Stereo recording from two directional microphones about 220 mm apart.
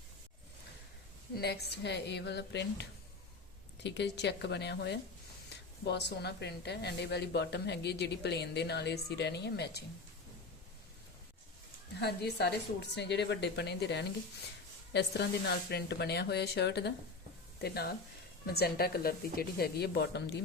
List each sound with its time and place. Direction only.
1.4 s speech: 45° left (ahead or behind)
3.8 s speech: 50° left (ahead or behind)
11.9 s speech: 45° left (ahead or behind)